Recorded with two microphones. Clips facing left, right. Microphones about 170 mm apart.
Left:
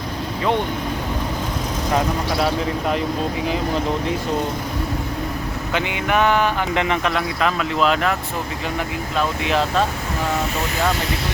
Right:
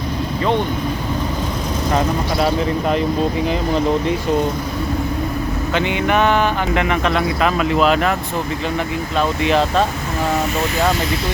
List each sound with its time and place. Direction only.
5.7 s a sound: 5° left (ahead or behind)
6.7 s speech: 20° left (ahead or behind)
7.4 s speech: 10° right (ahead or behind)
9.1 s speech: centre (ahead or behind)